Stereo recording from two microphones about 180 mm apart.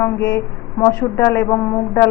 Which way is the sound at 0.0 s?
15° left (ahead or behind).